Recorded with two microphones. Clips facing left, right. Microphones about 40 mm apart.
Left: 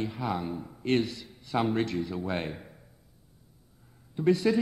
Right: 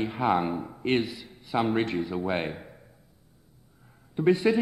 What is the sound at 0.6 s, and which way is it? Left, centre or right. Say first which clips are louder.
A man's voice: right 1 dB; right.